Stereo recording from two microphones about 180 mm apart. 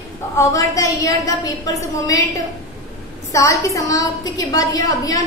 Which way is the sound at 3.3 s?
15° left (ahead or behind).